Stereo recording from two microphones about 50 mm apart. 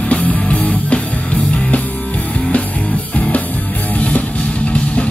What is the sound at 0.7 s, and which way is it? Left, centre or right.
Music, left.